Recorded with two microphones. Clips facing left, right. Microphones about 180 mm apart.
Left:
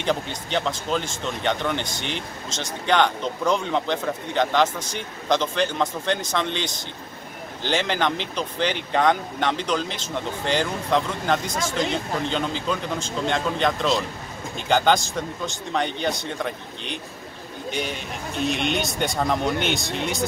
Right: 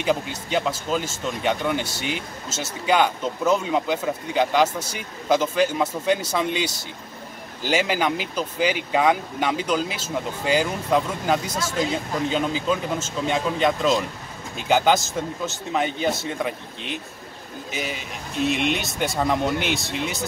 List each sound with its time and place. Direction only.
0.0 s speech: 5° right (ahead or behind)